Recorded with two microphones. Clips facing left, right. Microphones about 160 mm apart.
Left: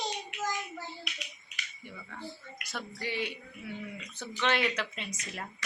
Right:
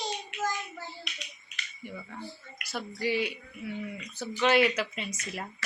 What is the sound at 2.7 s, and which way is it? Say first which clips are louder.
Speech: right 7 dB; 5° right (ahead or behind).